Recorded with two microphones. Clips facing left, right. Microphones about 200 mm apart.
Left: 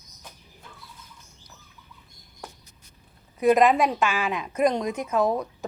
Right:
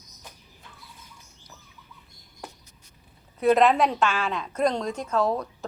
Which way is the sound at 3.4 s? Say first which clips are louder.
Left 1 dB; 10° left (ahead or behind).